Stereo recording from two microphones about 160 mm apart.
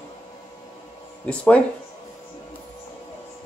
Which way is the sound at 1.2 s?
10° left (ahead or behind).